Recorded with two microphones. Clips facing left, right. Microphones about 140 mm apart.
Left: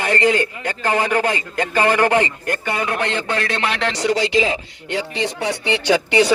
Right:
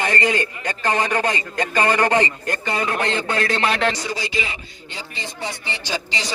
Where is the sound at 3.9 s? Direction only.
75° left (ahead or behind).